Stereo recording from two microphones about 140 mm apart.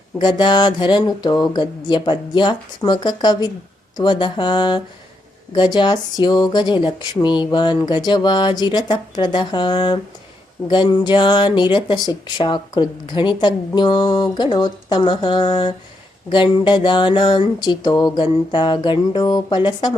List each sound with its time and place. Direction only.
0.2 s speech: 35° left (ahead or behind)